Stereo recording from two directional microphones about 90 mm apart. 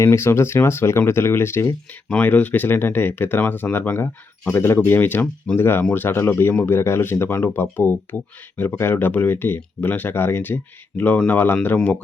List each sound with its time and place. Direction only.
0.0 s speech: 30° left (ahead or behind)
2.0 s speech: 15° left (ahead or behind)